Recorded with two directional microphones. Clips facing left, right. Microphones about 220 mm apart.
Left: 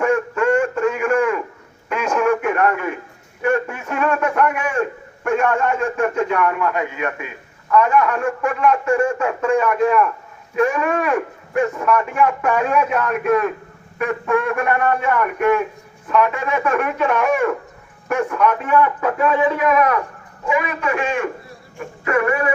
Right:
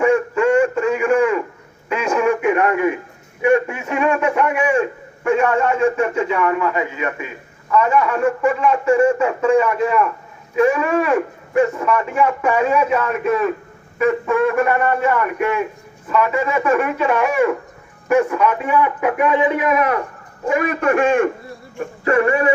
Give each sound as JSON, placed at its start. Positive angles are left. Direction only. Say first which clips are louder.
{"t": 0.0, "sound": "a sound", "louder": "right 3 dB", "side_deg": -10}
{"t": 1.9, "sound": "radio", "louder": "right 1 dB", "side_deg": -5}
{"t": 3.4, "sound": "a man's voice", "louder": "right 4 dB", "side_deg": -10}
{"t": 20.5, "sound": "a man's voice", "louder": "right 4 dB", "side_deg": -50}
{"t": 22.0, "sound": "speech", "louder": "right 3 dB", "side_deg": -30}